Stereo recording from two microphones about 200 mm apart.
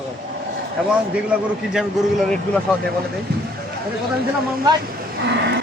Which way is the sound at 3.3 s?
55° right (ahead or behind).